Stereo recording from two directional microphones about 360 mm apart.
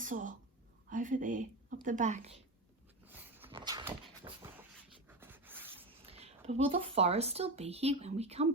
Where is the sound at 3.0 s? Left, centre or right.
Centre.